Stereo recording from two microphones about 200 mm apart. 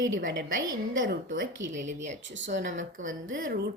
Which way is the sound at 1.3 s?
45° right (ahead or behind).